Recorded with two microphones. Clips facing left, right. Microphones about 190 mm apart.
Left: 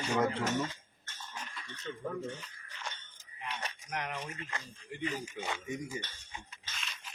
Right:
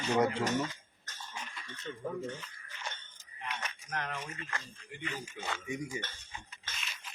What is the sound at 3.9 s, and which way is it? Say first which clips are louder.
Speech: even; 15° left (ahead or behind).